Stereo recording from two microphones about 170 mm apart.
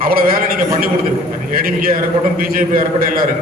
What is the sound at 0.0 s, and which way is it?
A man's voice, 60° right (ahead or behind).